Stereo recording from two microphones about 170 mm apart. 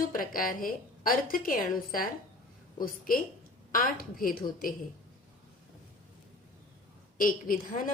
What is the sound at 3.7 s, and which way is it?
Speech, 55° left (ahead or behind).